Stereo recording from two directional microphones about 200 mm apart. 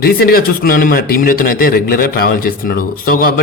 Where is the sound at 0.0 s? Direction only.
50° left (ahead or behind).